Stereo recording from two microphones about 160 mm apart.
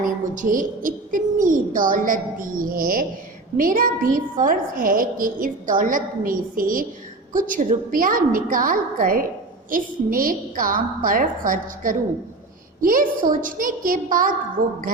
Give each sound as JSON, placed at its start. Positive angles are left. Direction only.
{"t": 0.0, "sound": "a woman's voice", "side_deg": -55}